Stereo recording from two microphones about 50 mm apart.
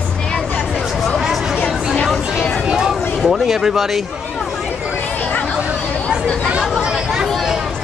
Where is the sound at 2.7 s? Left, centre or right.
Centre.